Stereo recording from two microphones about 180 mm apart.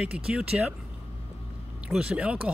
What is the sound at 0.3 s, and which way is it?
Speech, 5° right (ahead or behind).